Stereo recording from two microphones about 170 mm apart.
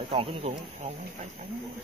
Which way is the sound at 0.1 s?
35° right (ahead or behind).